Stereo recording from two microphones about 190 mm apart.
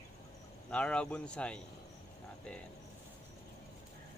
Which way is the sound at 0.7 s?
5° left (ahead or behind).